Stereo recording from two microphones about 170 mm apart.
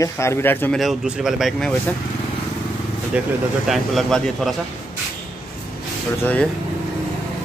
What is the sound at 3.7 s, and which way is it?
Speech, centre (ahead or behind).